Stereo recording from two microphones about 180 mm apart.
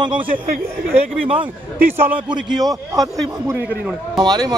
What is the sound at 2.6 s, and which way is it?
A man's voice, 20° right (ahead or behind).